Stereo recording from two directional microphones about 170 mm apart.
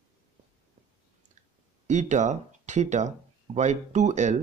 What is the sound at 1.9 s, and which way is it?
Speech, 45° right (ahead or behind).